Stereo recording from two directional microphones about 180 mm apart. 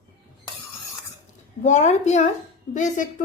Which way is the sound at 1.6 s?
40° left (ahead or behind).